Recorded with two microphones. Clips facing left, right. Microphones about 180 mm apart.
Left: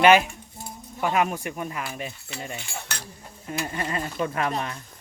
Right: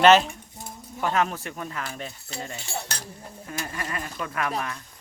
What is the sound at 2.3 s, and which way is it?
Speech, 35° right (ahead or behind).